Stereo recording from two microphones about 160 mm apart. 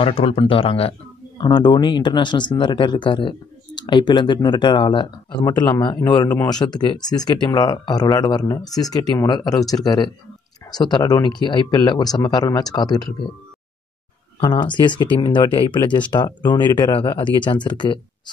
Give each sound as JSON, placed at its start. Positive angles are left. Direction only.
{"t": 0.0, "sound": "speech", "side_deg": 35}
{"t": 14.4, "sound": "speech", "side_deg": 30}